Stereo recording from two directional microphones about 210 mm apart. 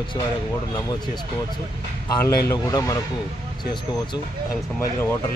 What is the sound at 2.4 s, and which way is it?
Speech, 15° left (ahead or behind).